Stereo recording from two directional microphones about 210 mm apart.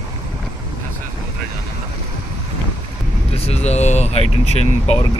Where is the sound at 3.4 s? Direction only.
30° left (ahead or behind).